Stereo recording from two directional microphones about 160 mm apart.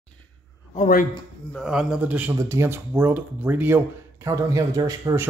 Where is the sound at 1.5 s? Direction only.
Centre (ahead or behind).